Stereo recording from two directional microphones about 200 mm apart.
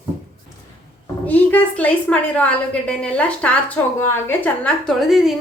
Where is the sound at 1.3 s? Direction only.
10° left (ahead or behind).